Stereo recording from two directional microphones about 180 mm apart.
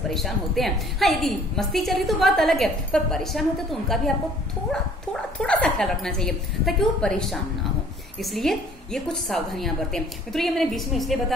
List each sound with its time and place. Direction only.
0.1 s a woman's voice: centre (ahead or behind)
5.4 s a woman's voice: 5° left (ahead or behind)